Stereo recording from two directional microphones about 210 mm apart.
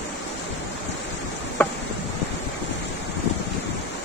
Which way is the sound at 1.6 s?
5° left (ahead or behind).